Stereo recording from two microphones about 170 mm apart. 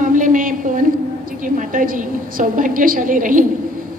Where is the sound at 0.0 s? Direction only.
50° right (ahead or behind).